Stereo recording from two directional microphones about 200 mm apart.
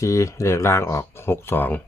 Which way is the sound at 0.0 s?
15° left (ahead or behind).